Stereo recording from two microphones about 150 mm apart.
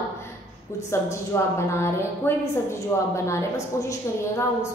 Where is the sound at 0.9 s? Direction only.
20° left (ahead or behind).